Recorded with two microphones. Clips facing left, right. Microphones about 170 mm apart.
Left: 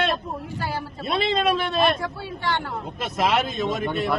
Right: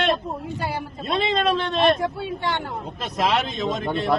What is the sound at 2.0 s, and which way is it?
Speech, 20° right (ahead or behind).